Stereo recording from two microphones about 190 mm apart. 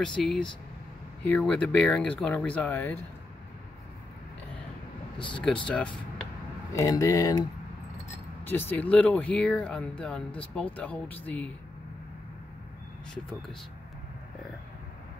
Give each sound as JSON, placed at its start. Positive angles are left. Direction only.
{"t": 0.2, "sound": "speech", "side_deg": 0}
{"t": 5.4, "sound": "speech", "side_deg": 5}
{"t": 6.7, "sound": "speech", "side_deg": 15}
{"t": 8.5, "sound": "speech", "side_deg": 10}
{"t": 13.1, "sound": "speech", "side_deg": 5}